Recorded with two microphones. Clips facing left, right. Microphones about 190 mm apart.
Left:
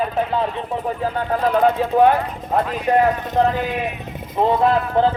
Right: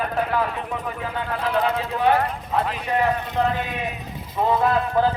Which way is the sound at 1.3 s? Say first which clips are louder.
Left 6 dB; 45° left (ahead or behind).